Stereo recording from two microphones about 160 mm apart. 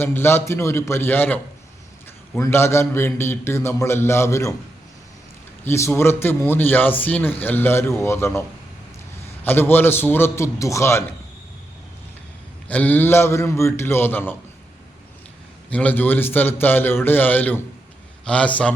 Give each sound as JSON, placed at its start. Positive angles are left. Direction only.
{"t": 0.0, "sound": "a man's voice", "side_deg": 15}
{"t": 2.4, "sound": "a man's voice", "side_deg": 15}
{"t": 5.6, "sound": "a man's voice", "side_deg": 15}
{"t": 12.6, "sound": "a man's voice", "side_deg": 10}
{"t": 15.7, "sound": "a man's voice", "side_deg": 10}